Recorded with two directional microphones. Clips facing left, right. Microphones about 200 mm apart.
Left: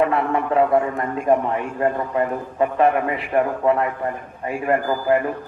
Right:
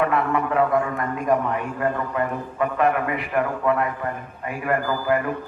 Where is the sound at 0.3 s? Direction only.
30° left (ahead or behind).